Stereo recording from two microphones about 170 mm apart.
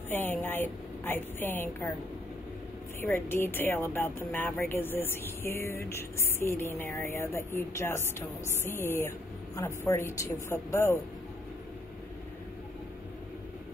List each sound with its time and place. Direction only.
0.1 s speech: 10° left (ahead or behind)
3.0 s speech: 15° left (ahead or behind)